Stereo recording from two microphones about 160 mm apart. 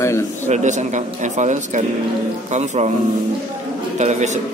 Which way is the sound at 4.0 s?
45° right (ahead or behind).